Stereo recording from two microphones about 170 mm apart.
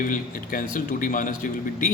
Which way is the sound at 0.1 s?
55° left (ahead or behind).